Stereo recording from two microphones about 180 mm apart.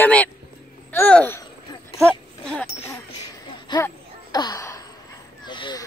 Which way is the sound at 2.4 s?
5° left (ahead or behind).